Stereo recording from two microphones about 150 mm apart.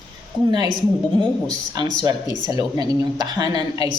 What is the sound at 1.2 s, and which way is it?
A woman's voice, 25° right (ahead or behind).